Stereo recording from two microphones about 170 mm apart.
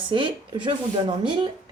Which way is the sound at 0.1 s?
30° right (ahead or behind).